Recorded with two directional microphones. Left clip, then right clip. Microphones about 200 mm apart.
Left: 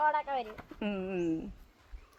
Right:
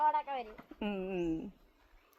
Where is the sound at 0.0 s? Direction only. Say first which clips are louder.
Left 2 dB; 5° right (ahead or behind).